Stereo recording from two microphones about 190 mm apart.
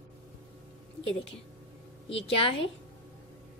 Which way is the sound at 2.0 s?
30° left (ahead or behind).